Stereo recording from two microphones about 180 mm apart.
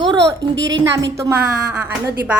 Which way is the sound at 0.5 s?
80° right.